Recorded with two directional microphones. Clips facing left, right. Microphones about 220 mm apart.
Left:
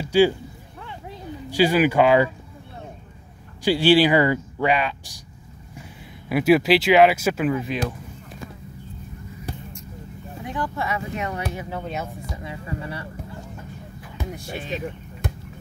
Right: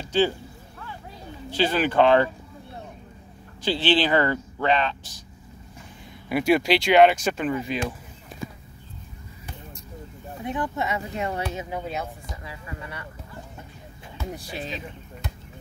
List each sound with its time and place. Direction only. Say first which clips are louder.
0.0 s speech: left 5 dB; 10° left (ahead or behind)
1.5 s speech: left 5 dB; 10° left (ahead or behind)
3.6 s speech: left 6 dB; 10° left (ahead or behind)
6.2 s speech: left 3 dB; centre (ahead or behind)
10.4 s speech: right 1 dB; 20° right (ahead or behind)
12.4 s speech: left 7 dB; 30° left (ahead or behind)
14.2 s a sound: left 1 dB; 15° left (ahead or behind)